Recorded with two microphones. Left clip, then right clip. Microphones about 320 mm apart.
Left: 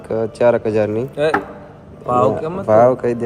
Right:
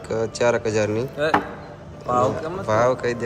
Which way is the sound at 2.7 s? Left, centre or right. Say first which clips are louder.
Left 8 dB; centre.